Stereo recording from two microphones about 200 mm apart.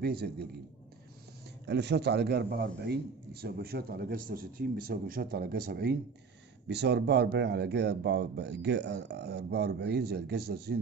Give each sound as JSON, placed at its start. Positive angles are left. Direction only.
{"t": 0.0, "sound": "a man's voice", "side_deg": -50}
{"t": 1.7, "sound": "a man's voice", "side_deg": -60}